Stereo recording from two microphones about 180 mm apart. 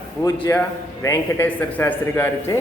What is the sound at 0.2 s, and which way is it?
Speech, 20° left (ahead or behind).